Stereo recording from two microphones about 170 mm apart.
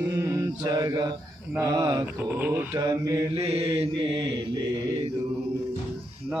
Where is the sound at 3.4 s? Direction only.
35° right (ahead or behind).